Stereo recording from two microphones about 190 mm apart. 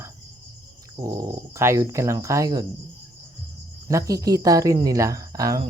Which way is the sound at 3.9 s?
15° right (ahead or behind).